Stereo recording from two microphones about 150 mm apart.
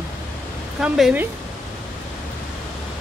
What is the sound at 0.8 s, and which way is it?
Speech, 5° right (ahead or behind).